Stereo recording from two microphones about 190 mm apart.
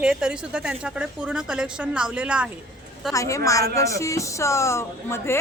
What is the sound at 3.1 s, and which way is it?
Speech, 15° left (ahead or behind).